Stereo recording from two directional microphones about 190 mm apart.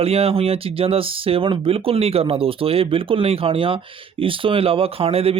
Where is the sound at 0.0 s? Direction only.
30° right (ahead or behind).